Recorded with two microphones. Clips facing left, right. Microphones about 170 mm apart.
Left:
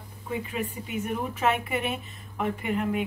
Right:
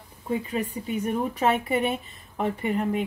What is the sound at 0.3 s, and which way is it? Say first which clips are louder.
Speech: right 4 dB; 35° right (ahead or behind).